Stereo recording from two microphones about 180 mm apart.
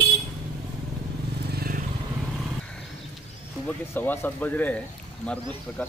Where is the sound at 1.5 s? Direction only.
60° right (ahead or behind).